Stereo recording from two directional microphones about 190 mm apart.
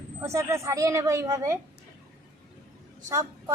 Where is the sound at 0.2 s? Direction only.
15° right (ahead or behind).